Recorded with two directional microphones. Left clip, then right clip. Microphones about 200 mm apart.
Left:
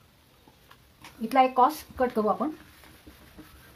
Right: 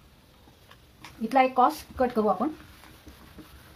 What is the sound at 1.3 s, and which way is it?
Speech, 30° left (ahead or behind).